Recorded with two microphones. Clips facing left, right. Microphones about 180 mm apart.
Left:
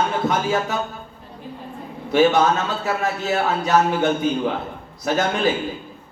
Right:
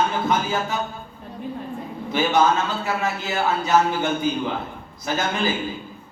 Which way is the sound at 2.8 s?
70° left (ahead or behind).